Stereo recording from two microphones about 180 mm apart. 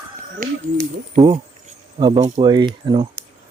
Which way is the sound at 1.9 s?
25° right (ahead or behind).